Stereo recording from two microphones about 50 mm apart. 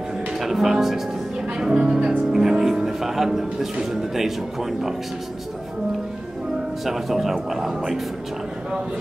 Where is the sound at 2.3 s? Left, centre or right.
Centre.